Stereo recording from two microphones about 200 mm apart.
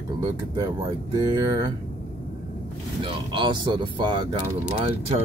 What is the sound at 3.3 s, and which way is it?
Speech, 25° right (ahead or behind).